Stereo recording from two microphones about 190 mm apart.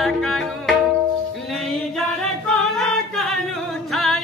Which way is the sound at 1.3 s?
Centre (ahead or behind).